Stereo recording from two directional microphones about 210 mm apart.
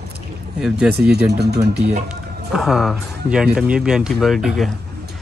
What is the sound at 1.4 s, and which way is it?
Speech, 50° right (ahead or behind).